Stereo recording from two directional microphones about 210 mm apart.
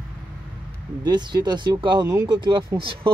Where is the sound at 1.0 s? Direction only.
20° right (ahead or behind).